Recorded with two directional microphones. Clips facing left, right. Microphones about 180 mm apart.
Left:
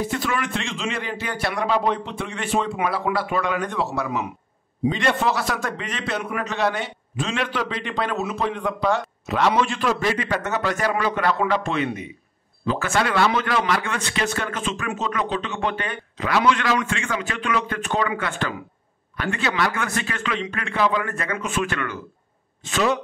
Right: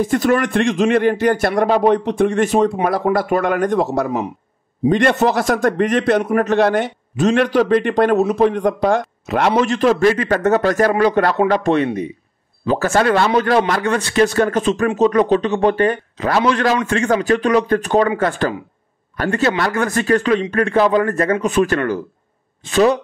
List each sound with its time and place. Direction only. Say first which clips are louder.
0.0 s speech: right 9 dB; 50° right (ahead or behind)